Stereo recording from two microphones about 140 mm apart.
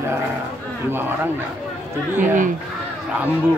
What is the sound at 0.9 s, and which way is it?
Speech, 15° right (ahead or behind).